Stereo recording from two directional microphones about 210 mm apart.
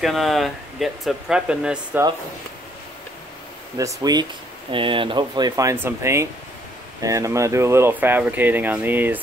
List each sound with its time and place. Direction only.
0.0 s speech: centre (ahead or behind)
3.7 s speech: 15° right (ahead or behind)